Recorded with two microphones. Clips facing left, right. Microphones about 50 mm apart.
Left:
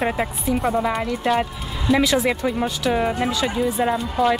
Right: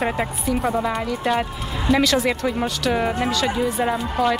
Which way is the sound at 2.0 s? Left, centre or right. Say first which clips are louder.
Even; centre.